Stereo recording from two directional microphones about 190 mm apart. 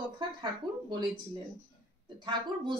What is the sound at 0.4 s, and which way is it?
Speech, 25° right (ahead or behind).